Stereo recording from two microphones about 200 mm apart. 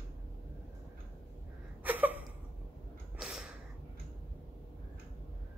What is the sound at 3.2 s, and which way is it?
Gasp, centre (ahead or behind).